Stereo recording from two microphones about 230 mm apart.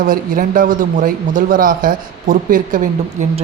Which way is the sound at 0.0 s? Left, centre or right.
Right.